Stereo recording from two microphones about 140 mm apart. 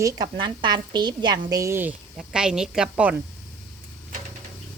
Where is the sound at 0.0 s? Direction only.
30° right (ahead or behind); by 2.0 s 15° right (ahead or behind).